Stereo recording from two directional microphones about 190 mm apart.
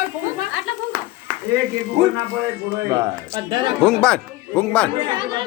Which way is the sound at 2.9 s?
25° right (ahead or behind).